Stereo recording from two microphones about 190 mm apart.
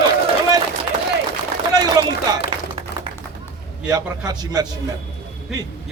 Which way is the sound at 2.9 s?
60° left (ahead or behind).